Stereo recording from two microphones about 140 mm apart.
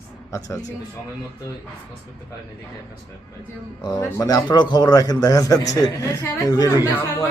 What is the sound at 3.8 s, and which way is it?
A man's voice, 30° left (ahead or behind).